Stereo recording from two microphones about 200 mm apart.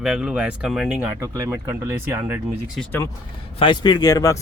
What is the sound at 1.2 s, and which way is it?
Speech, 15° right (ahead or behind).